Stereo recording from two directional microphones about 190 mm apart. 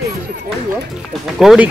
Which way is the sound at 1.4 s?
Centre (ahead or behind).